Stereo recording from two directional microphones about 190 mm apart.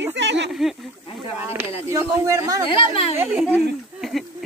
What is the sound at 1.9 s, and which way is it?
Speech, 15° right (ahead or behind).